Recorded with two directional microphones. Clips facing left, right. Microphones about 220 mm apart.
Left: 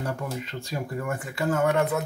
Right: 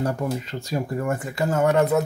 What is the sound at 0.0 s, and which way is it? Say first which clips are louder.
Speech: right 6 dB; 40° right (ahead or behind).